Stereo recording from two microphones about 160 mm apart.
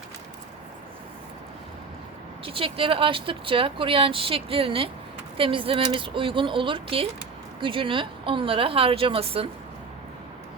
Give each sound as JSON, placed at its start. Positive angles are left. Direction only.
{"t": 2.4, "sound": "speech", "side_deg": -35}